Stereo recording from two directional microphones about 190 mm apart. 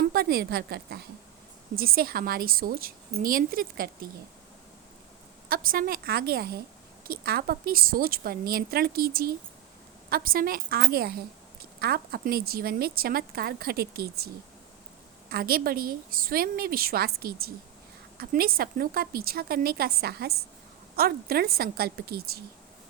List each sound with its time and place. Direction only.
0.0 s a woman's voice: 55° right (ahead or behind)
5.5 s a woman's voice: 50° right (ahead or behind)
15.3 s a woman's voice: 55° right (ahead or behind)